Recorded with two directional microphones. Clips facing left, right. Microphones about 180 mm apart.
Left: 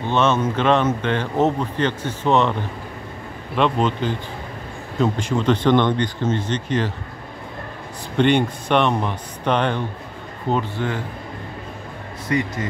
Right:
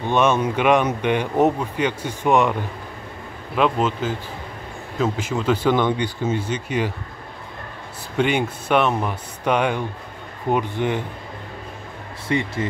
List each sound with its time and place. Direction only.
0.1 s speech: 15° right (ahead or behind)
3.5 s speech: 5° right (ahead or behind)
8.2 s speech: 5° right (ahead or behind)
12.3 s speech: 25° right (ahead or behind)